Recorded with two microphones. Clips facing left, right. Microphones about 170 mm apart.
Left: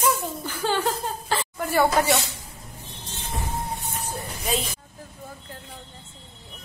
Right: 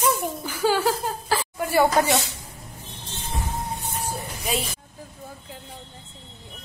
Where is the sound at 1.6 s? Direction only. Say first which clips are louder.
Right 1 dB; 15° right (ahead or behind).